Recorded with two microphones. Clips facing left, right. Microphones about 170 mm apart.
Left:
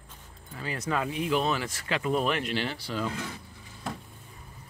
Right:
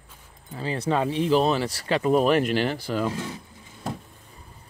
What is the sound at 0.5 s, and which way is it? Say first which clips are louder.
Speech: right 6 dB; 30° right (ahead or behind).